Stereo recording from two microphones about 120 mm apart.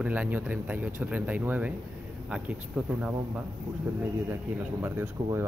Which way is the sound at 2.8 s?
5° right (ahead or behind).